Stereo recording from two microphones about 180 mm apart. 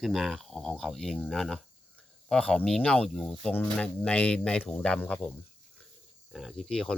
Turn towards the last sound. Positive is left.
turn(degrees=0)  # may be behind; listen again after turning